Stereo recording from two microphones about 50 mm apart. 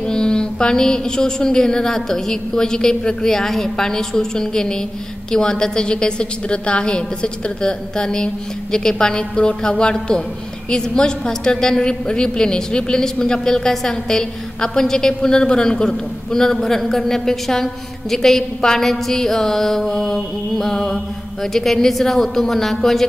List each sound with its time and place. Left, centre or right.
0.1 s a woman's voice: centre